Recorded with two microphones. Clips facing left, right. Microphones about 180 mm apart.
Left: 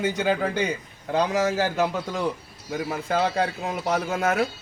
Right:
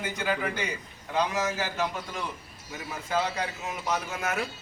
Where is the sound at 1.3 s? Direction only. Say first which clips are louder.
Left 7 dB; 65° left (ahead or behind).